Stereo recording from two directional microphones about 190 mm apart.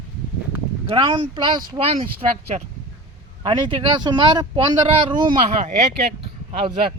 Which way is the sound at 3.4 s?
20° right (ahead or behind).